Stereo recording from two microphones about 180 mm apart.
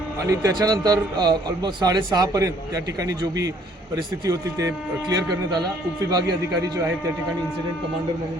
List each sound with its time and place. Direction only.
0.3 s a man's voice: 20° right (ahead or behind)